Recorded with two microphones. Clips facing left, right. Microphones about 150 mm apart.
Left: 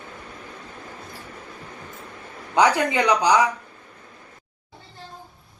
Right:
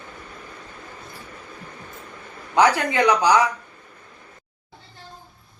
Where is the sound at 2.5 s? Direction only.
15° left (ahead or behind).